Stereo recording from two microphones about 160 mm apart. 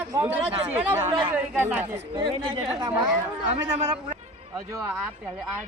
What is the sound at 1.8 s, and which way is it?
Speech, 35° right (ahead or behind).